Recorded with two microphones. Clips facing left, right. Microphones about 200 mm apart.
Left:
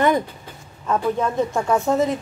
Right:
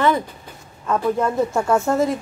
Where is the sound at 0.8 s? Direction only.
5° right (ahead or behind).